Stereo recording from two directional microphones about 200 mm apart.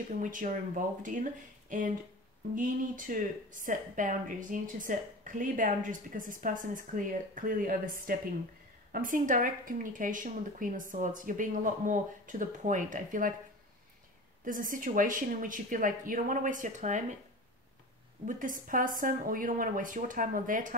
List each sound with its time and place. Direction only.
0.2 s speech: 40° right (ahead or behind)
14.4 s speech: 40° right (ahead or behind)
18.2 s speech: 40° right (ahead or behind)